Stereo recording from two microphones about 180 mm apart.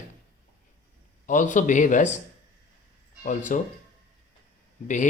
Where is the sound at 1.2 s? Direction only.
45° left (ahead or behind).